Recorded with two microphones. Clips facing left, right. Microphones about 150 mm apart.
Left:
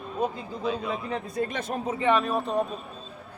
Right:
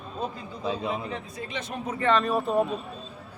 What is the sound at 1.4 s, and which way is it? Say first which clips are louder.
Speech: left 8 dB; 50° left (ahead or behind).